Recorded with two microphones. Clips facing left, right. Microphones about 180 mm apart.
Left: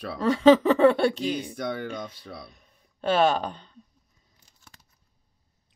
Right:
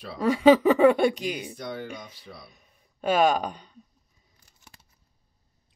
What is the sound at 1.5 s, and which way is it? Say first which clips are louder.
Speech: left 4 dB; 60° left (ahead or behind).